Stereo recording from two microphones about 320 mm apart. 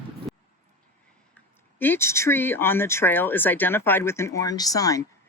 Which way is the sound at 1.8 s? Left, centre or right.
Centre.